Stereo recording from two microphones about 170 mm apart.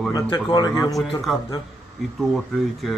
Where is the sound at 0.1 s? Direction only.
25° left (ahead or behind).